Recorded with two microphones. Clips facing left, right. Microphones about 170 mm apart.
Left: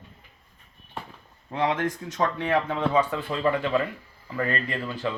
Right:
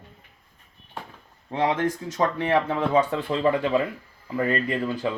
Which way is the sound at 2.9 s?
25° right (ahead or behind).